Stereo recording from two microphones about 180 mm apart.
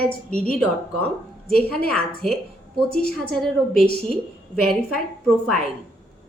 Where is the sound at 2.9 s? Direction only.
55° left (ahead or behind).